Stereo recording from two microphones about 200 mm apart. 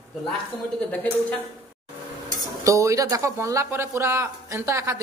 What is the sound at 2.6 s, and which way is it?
A man's voice, 15° right (ahead or behind).